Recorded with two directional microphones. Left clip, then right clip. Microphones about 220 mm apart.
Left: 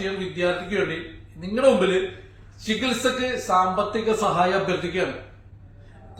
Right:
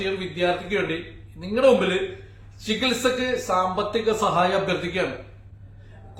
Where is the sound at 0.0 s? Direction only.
15° right (ahead or behind).